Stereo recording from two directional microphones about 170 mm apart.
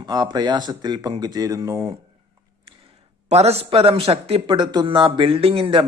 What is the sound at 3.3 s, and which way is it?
Speech, 40° right (ahead or behind).